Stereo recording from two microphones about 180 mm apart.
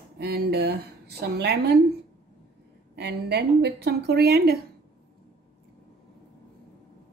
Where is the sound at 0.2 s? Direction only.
65° right (ahead or behind).